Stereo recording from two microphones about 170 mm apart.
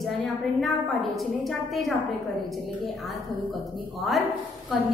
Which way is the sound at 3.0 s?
Centre (ahead or behind).